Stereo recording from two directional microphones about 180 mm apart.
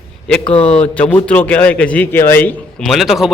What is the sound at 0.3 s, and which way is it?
A man's voice, 5° left (ahead or behind).